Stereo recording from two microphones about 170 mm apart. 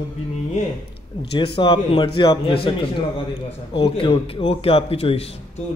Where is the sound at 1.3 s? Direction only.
30° left (ahead or behind).